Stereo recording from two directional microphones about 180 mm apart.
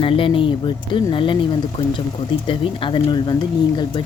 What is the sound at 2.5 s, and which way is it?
Speech, 25° left (ahead or behind).